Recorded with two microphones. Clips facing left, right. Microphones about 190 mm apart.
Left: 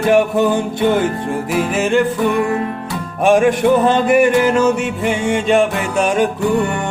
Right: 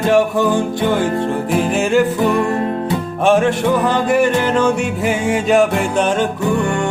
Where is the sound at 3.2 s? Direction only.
10° left (ahead or behind).